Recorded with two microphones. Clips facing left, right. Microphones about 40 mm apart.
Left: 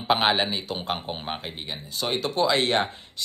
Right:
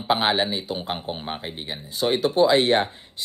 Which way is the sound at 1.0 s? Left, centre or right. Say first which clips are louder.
Right 2 dB; centre.